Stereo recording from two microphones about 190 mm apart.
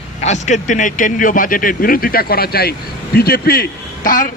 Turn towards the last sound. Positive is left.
turn(degrees=45)  # may be behind; listen again after turning